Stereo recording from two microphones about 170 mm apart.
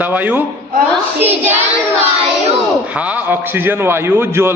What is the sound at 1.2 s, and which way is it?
Child singing, 10° right (ahead or behind).